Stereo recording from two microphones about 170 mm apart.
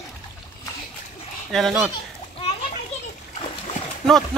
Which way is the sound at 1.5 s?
Centre (ahead or behind).